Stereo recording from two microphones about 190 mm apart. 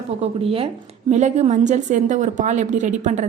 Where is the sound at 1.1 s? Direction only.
35° right (ahead or behind).